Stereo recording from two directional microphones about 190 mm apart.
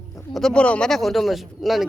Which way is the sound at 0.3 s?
5° left (ahead or behind).